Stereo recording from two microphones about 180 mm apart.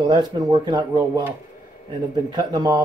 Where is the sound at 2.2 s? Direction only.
25° right (ahead or behind).